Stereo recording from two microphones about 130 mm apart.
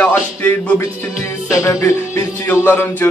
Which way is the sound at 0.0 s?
10° left (ahead or behind).